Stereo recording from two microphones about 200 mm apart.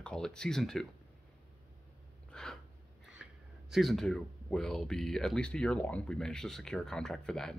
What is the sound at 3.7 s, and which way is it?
Speech, centre (ahead or behind).